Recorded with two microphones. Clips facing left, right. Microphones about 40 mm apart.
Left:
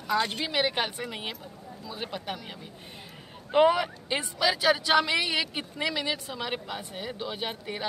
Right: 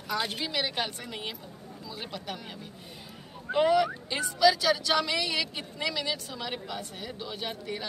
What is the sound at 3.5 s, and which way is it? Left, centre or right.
A woman's voice, left.